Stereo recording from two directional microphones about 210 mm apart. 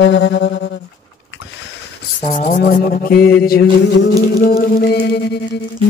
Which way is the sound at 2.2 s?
35° left (ahead or behind).